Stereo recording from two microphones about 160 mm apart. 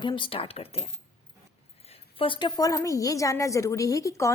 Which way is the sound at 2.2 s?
30° left (ahead or behind).